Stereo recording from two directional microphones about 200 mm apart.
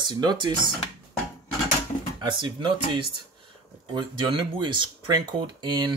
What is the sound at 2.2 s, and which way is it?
Speech, 25° right (ahead or behind).